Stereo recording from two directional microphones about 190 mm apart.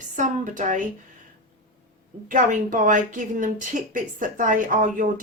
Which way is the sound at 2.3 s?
45° right (ahead or behind).